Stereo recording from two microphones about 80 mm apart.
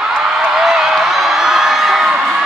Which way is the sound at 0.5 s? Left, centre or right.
Centre.